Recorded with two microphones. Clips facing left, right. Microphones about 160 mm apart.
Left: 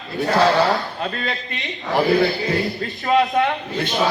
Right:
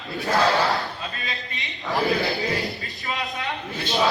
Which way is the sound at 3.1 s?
75° left (ahead or behind).